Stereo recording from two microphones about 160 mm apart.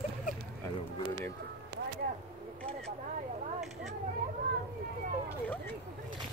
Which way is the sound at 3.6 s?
Centre (ahead or behind).